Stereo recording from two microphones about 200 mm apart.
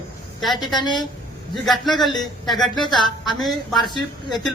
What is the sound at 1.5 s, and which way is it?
A man's voice, centre (ahead or behind).